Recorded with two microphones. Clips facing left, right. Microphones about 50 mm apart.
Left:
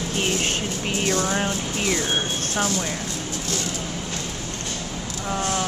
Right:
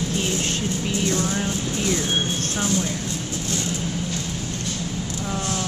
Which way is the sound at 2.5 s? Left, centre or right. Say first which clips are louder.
Left 1 dB; left.